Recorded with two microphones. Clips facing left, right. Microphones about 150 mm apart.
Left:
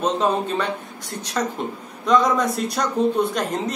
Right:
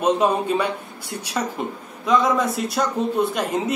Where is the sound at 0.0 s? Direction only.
10° right (ahead or behind).